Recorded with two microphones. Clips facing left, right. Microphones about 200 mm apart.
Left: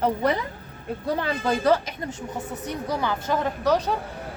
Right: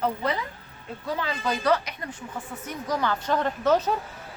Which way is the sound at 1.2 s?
55° left (ahead or behind).